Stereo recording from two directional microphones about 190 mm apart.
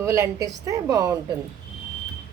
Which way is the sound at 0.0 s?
15° right (ahead or behind).